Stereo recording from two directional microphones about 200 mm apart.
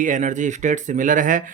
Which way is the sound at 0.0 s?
40° right (ahead or behind).